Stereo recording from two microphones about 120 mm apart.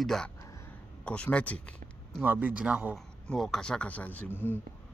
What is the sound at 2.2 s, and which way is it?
Speech, 15° right (ahead or behind).